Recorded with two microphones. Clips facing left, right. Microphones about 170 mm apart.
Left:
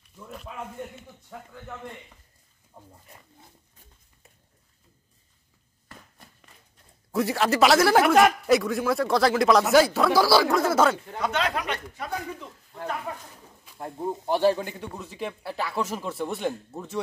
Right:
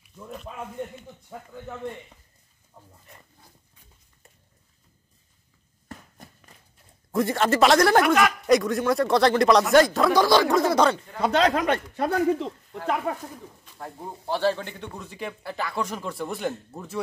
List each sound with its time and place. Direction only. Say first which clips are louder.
0.0 s a man's voice: right 3 dB; centre (ahead or behind)
2.8 s speech: left 2 dB; 15° left (ahead or behind)
7.1 s speech: right 1 dB; centre (ahead or behind)
11.1 s speech: right 6 dB; 35° right (ahead or behind); by 13.1 s 85° right
13.7 s speech: left 7 dB; 15° left (ahead or behind); by 17.0 s centre (ahead or behind)